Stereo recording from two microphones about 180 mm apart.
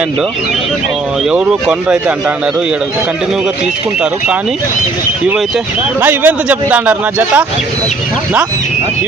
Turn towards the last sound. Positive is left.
turn(degrees=-10)  # may be behind; listen again after turning